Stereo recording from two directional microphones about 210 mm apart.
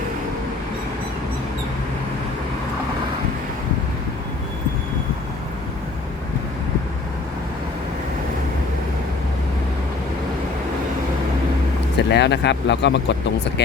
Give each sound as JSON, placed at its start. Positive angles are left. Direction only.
{"t": 11.9, "sound": "speech", "side_deg": 55}